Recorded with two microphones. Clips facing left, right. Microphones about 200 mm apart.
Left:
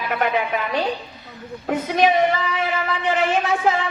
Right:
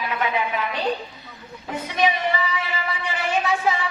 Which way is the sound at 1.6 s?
55° left (ahead or behind).